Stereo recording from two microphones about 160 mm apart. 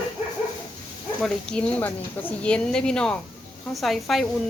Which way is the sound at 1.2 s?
5° left (ahead or behind).